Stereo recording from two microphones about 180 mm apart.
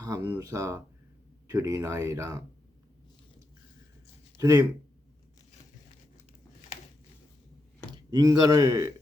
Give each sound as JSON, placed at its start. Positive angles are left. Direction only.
{"t": 0.0, "sound": "speech", "side_deg": -20}
{"t": 4.4, "sound": "speech", "side_deg": -20}
{"t": 7.9, "sound": "speech", "side_deg": -20}